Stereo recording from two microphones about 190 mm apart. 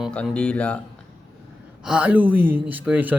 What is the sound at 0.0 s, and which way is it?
Speech, centre (ahead or behind).